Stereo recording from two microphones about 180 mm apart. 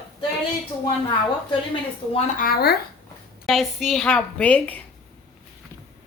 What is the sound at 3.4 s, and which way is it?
A woman's voice, centre (ahead or behind).